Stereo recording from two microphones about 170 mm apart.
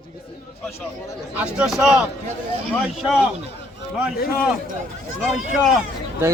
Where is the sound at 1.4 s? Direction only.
5° right (ahead or behind).